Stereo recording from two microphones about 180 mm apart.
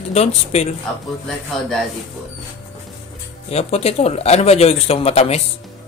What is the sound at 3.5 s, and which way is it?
Speech, 35° left (ahead or behind).